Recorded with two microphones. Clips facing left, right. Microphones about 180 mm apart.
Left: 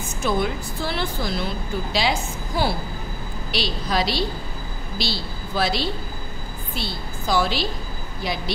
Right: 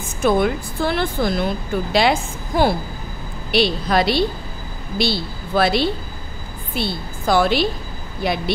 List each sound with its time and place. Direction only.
0.2 s a woman's voice: 55° right (ahead or behind)